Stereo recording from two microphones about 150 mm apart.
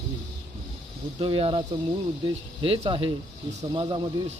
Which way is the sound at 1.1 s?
40° right (ahead or behind).